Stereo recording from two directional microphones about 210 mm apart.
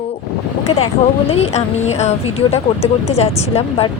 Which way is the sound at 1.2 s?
30° left (ahead or behind).